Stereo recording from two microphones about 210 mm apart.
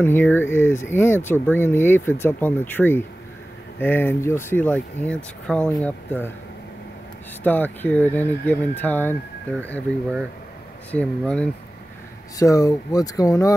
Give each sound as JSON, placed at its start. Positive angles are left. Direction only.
{"t": 0.0, "sound": "speech", "side_deg": 10}
{"t": 7.4, "sound": "speech", "side_deg": 10}
{"t": 12.4, "sound": "speech", "side_deg": 15}